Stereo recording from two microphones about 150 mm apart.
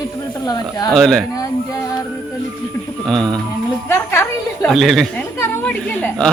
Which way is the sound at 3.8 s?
20° left (ahead or behind).